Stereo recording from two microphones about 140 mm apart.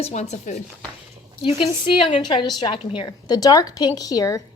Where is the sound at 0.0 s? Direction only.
50° left (ahead or behind).